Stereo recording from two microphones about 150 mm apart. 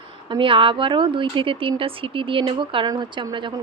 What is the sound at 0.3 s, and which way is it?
Speech, 35° right (ahead or behind).